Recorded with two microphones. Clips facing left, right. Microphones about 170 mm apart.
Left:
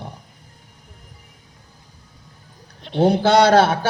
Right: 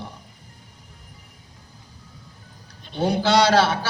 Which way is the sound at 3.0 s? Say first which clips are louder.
Left 4 dB; 55° left (ahead or behind).